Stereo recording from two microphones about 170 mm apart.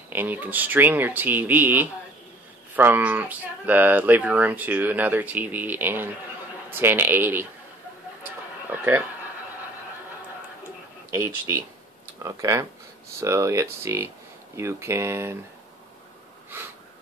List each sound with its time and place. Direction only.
0.1 s speech: 10° right (ahead or behind)
8.6 s speech: 10° right (ahead or behind)
11.1 s speech: 15° right (ahead or behind)
16.5 s a sound: 10° right (ahead or behind)